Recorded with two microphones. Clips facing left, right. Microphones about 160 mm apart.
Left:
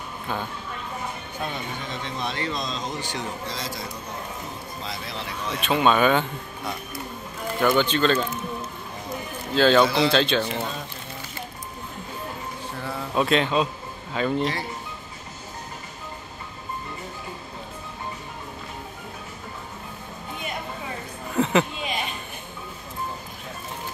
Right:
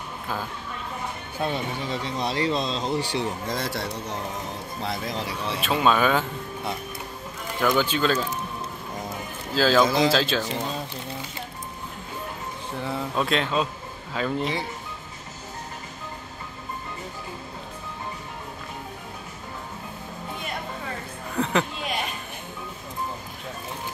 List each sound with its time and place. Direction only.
1.4 s speech: 30° right (ahead or behind)
3.4 s a man's voice: 55° right (ahead or behind)
4.8 s speech: 55° right (ahead or behind)
5.1 s speech: 35° right (ahead or behind)
5.6 s speech: centre (ahead or behind)
7.6 s speech: 5° right (ahead or behind)
9.5 s speech: centre (ahead or behind)
13.1 s speech: centre (ahead or behind)
21.4 s a sound: 5° left (ahead or behind)